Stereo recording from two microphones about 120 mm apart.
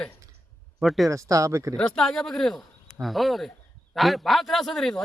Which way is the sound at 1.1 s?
25° right (ahead or behind).